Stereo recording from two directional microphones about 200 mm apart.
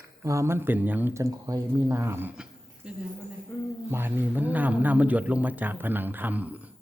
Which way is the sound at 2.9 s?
5° right (ahead or behind).